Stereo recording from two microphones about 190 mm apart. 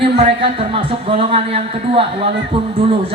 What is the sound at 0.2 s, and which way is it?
Speech, 30° right (ahead or behind).